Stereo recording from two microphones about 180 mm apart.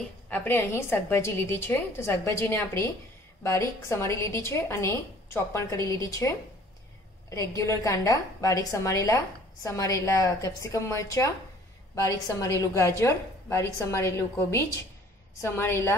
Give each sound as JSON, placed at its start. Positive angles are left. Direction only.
{"t": 0.3, "sound": "a woman's voice", "side_deg": 10}
{"t": 12.4, "sound": "a woman's voice", "side_deg": 15}